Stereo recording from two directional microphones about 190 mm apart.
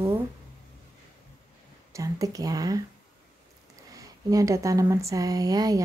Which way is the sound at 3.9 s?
15° right (ahead or behind).